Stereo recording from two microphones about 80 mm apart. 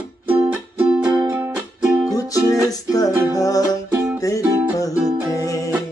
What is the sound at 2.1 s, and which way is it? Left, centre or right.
Music, left.